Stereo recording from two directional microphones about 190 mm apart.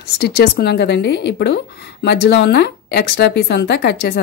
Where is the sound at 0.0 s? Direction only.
55° left (ahead or behind).